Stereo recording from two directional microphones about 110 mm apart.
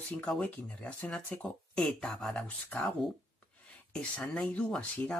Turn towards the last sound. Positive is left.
turn(degrees=10)  # may be behind; listen again after turning